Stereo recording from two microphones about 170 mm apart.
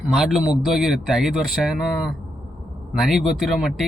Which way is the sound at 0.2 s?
5° right (ahead or behind).